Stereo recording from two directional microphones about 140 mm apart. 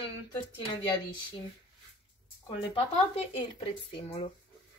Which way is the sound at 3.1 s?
40° left (ahead or behind).